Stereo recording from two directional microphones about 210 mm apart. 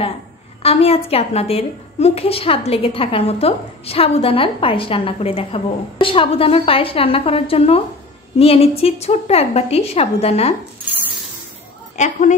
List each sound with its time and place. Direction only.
0.6 s a woman's voice: 30° left (ahead or behind)
12.0 s speech: 35° left (ahead or behind)